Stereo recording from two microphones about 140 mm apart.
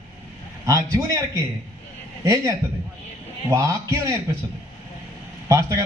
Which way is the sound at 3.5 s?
25° right (ahead or behind).